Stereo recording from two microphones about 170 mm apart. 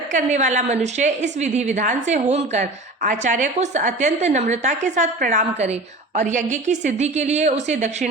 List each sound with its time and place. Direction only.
0.1 s speech: 45° right (ahead or behind)